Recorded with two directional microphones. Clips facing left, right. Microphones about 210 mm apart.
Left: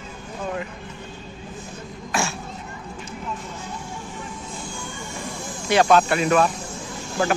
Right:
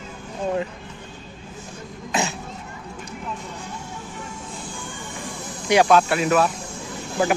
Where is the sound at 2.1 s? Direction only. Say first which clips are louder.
Right 1 dB; 20° right (ahead or behind).